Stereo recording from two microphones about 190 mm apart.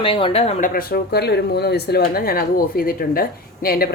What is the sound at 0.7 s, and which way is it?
A woman's voice, 50° left (ahead or behind).